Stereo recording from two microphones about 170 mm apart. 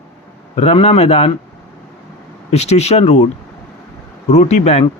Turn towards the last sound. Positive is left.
turn(degrees=40)  # may be behind; listen again after turning